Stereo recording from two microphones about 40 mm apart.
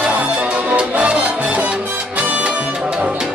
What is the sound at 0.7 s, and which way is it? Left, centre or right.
Music, right.